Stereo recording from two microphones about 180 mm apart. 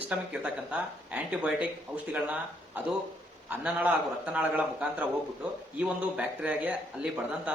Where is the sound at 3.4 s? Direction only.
10° right (ahead or behind).